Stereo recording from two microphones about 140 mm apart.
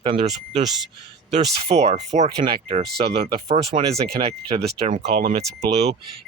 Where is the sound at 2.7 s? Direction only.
50° right (ahead or behind).